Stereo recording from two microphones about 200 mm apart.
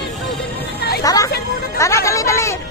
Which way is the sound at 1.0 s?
15° left (ahead or behind).